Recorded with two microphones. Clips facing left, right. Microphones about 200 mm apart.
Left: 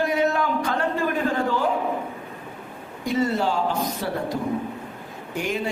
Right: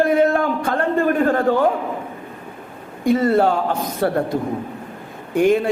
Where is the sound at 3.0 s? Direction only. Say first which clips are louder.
Right 7 dB; 55° right (ahead or behind).